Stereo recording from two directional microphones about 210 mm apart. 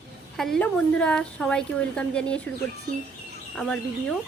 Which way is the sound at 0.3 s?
Centre (ahead or behind).